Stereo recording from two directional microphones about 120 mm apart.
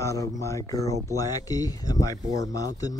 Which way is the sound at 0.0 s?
25° left (ahead or behind).